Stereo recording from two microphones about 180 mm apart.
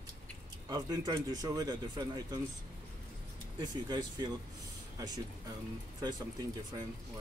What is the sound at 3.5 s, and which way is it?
Speech, 25° right (ahead or behind).